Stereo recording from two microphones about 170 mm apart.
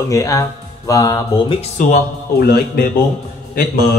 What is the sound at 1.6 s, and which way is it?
Speech, 50° left (ahead or behind).